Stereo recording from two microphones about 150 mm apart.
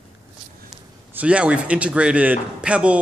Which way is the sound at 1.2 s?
10° right (ahead or behind).